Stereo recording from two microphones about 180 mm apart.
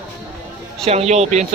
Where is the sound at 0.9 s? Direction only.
35° right (ahead or behind).